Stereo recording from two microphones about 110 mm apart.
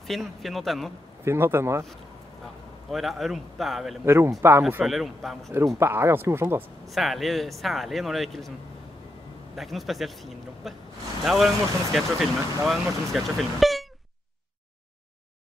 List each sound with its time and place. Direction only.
0.0 s speech: centre (ahead or behind)
1.2 s speech: 25° right (ahead or behind)
2.9 s speech: centre (ahead or behind)
4.0 s speech: 25° right (ahead or behind)
4.8 s speech: centre (ahead or behind)
5.8 s speech: 25° right (ahead or behind)
6.9 s speech: centre (ahead or behind)
9.6 s speech: centre (ahead or behind)